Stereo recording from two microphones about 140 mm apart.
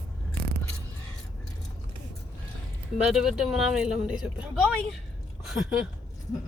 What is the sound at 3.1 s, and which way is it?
Speech, 5° right (ahead or behind).